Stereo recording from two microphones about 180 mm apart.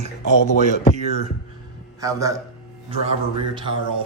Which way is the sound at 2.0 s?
20° right (ahead or behind).